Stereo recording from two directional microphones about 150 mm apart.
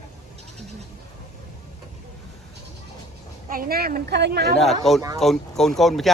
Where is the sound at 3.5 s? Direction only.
75° right (ahead or behind); by 4.6 s 90° right.